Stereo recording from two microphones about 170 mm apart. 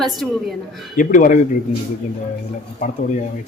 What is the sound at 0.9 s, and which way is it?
Speech, 50° left (ahead or behind).